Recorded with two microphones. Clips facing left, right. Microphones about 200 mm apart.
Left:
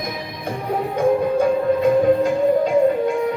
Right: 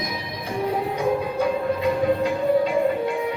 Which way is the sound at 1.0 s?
50° left (ahead or behind).